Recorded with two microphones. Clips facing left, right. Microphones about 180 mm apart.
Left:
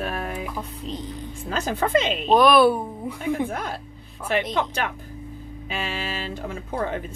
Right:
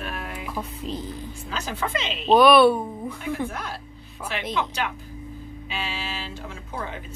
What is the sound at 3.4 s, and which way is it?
Speech, 50° left (ahead or behind).